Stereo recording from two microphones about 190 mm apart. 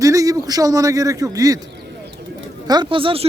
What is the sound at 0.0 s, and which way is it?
A man's voice, 15° right (ahead or behind).